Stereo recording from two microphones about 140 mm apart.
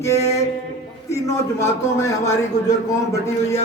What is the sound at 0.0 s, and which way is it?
Speech, 20° left (ahead or behind).